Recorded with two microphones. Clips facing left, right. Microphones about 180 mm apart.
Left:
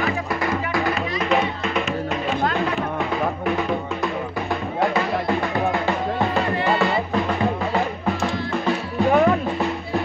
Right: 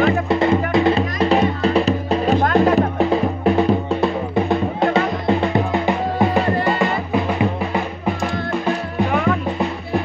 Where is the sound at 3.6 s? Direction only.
30° right (ahead or behind).